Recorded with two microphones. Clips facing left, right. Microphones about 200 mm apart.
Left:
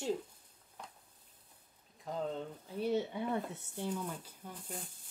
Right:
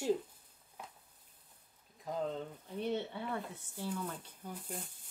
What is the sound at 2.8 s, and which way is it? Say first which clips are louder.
Speech: left 3 dB; 10° left (ahead or behind).